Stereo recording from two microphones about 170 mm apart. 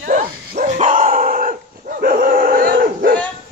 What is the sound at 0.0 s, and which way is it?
Dog, 50° right (ahead or behind).